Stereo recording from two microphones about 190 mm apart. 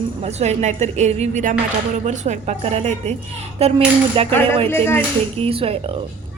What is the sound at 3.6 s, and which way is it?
Cutlery, 30° right (ahead or behind).